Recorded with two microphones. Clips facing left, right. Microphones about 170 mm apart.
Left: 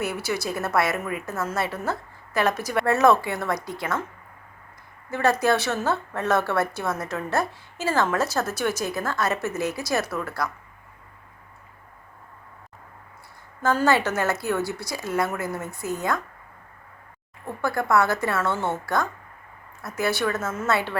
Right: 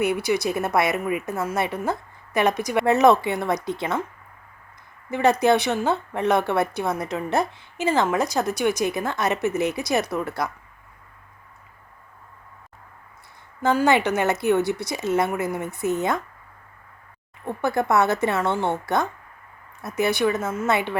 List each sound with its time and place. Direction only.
0.0 s a woman's voice: 15° right (ahead or behind)
5.1 s a woman's voice: 20° right (ahead or behind)
13.6 s a woman's voice: 15° right (ahead or behind)
17.4 s a woman's voice: 20° right (ahead or behind)